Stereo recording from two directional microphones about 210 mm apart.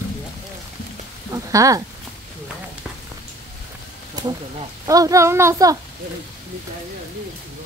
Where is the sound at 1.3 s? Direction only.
15° right (ahead or behind).